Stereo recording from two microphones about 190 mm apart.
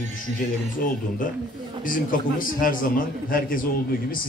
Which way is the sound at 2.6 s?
45° left (ahead or behind).